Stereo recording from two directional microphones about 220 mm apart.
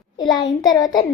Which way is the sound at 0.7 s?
15° left (ahead or behind).